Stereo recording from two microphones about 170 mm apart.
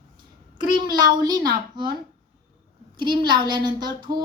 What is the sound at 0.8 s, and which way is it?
A woman's voice, 25° right (ahead or behind).